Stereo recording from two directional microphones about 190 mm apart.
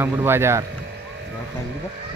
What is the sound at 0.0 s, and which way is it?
Speech, 10° right (ahead or behind).